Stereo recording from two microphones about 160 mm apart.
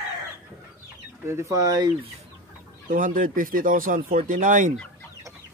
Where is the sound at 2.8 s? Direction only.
55° right (ahead or behind).